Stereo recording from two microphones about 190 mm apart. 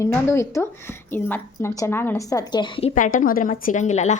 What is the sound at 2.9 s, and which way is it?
A woman's voice, 45° left (ahead or behind).